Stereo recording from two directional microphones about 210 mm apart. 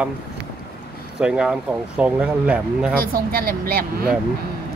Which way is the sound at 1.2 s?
5° right (ahead or behind).